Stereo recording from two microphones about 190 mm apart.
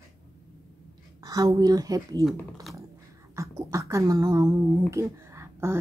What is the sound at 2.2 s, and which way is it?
Speech, centre (ahead or behind).